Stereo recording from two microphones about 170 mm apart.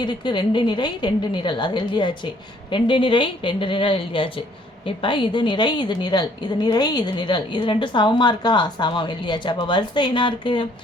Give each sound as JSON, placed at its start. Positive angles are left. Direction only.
{"t": 0.0, "sound": "a woman's voice", "side_deg": 25}